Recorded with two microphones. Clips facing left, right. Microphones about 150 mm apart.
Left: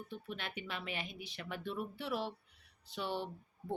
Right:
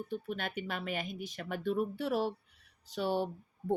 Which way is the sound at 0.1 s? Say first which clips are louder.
Right 6 dB; 45° right (ahead or behind).